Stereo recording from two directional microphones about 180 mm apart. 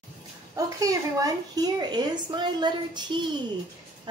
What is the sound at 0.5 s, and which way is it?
A woman's voice, 20° right (ahead or behind).